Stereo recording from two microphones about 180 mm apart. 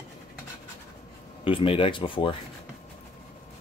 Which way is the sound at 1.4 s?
30° left (ahead or behind).